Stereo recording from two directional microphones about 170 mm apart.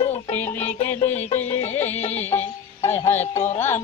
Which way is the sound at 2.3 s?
25° left (ahead or behind).